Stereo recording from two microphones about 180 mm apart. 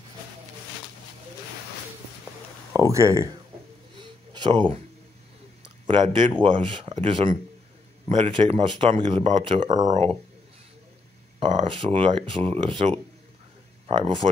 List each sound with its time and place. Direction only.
2.7 s speech: 15° right (ahead or behind)
4.0 s a sound: 25° right (ahead or behind)
5.9 s speech: 30° right (ahead or behind)
11.3 s speech: 30° right (ahead or behind)